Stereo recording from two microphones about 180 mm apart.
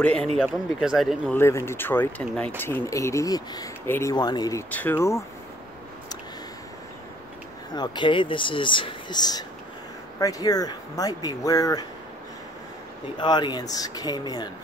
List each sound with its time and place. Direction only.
0.0 s speech: 5° left (ahead or behind)
1.3 s speech: 15° left (ahead or behind)
7.7 s speech: 25° left (ahead or behind)
13.2 s speech: 25° left (ahead or behind)